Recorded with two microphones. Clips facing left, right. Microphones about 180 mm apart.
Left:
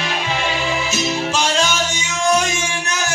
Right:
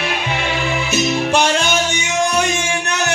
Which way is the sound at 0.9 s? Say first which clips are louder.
Right 9 dB; 60° right (ahead or behind).